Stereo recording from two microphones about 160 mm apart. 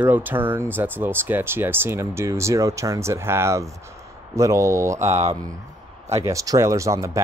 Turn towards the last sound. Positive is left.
turn(degrees=-20)  # may be behind; listen again after turning